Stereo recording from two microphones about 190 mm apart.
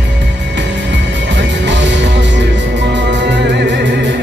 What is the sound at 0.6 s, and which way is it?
Music, 70° right (ahead or behind).